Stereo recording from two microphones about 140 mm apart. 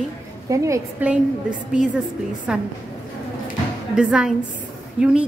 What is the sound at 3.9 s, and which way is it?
Speech, 5° right (ahead or behind).